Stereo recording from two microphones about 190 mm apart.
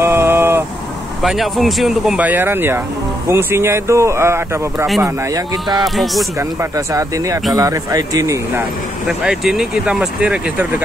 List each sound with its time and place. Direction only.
0.0 s vehicle: 10° right (ahead or behind)
1.2 s speech: centre (ahead or behind); by 5.8 s 20° right (ahead or behind)
5.8 s speech: centre (ahead or behind)
6.6 s speech: 15° right (ahead or behind)
9.0 s speech: 5° right (ahead or behind)